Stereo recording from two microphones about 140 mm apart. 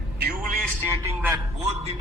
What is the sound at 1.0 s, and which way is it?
Speech, 20° right (ahead or behind).